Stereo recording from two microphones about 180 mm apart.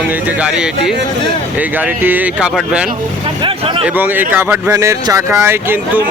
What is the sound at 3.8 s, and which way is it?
Speech, 10° right (ahead or behind).